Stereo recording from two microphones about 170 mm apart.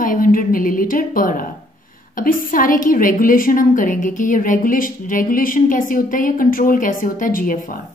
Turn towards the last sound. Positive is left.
turn(degrees=55)  # may be behind; listen again after turning